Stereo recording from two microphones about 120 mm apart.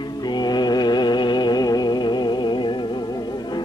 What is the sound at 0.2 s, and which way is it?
Music, 35° left (ahead or behind).